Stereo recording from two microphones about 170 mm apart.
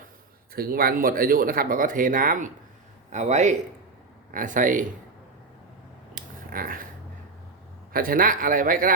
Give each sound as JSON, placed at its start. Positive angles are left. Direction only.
{"t": 0.5, "sound": "speech", "side_deg": -60}
{"t": 6.1, "sound": "a sound", "side_deg": -55}
{"t": 7.9, "sound": "speech", "side_deg": -55}